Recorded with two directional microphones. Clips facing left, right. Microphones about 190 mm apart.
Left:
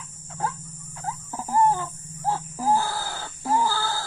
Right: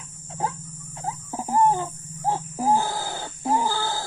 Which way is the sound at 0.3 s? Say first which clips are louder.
Right 1 dB; 20° right (ahead or behind).